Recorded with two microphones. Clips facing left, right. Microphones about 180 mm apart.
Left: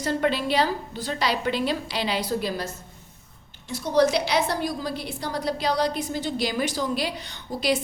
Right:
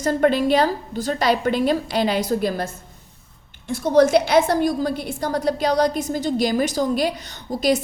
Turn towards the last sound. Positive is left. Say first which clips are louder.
# right 4 dB
turn(degrees=-40)  # may be behind; listen again after turning